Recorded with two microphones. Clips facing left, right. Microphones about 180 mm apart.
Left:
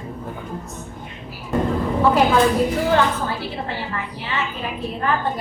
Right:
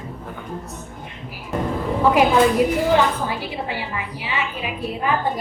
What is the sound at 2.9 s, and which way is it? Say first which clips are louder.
A woman's voice: right 1 dB; 15° right (ahead or behind).